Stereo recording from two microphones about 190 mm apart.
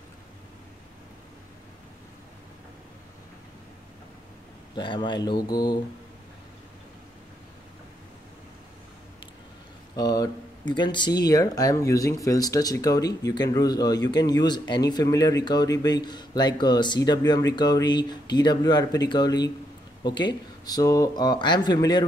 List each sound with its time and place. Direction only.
4.7 s speech: 25° left (ahead or behind)
9.9 s speech: 20° left (ahead or behind)